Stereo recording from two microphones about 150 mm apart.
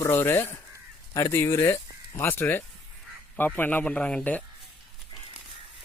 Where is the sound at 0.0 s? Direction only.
15° left (ahead or behind).